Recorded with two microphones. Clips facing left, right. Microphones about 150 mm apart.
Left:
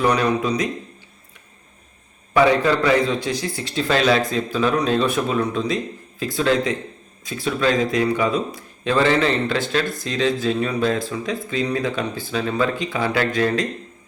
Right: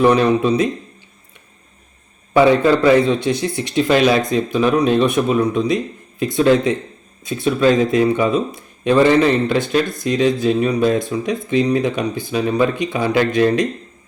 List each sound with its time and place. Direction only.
0.0 s a man's voice: 25° right (ahead or behind)
2.3 s speech: 25° right (ahead or behind)